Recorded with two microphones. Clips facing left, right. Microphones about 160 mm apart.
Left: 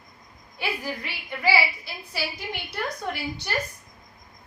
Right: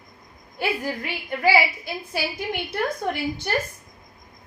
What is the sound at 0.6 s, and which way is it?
A woman's voice, 50° right (ahead or behind).